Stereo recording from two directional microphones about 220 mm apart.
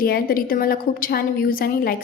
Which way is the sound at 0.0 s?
40° left (ahead or behind).